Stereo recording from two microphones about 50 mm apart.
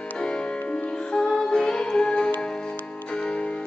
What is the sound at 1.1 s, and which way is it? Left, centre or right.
Music, centre.